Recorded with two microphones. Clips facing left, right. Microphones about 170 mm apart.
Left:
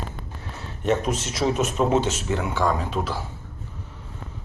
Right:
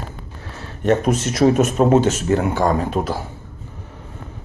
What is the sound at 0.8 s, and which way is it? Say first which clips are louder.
Speech: right 6 dB; 55° right (ahead or behind).